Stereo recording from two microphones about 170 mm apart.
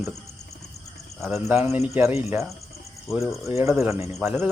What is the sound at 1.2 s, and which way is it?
Speech, 15° right (ahead or behind).